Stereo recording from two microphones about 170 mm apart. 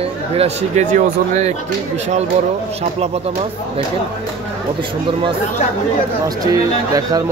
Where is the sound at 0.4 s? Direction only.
40° right (ahead or behind).